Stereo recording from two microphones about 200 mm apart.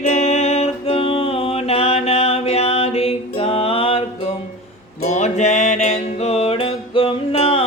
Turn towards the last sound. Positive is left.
turn(degrees=30)  # may be behind; listen again after turning